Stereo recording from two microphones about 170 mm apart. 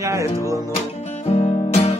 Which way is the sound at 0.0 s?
15° right (ahead or behind).